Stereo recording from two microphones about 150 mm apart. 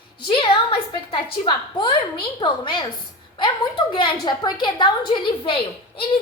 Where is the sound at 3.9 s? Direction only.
30° left (ahead or behind).